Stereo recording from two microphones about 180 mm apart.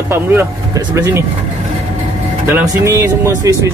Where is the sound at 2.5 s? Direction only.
15° right (ahead or behind).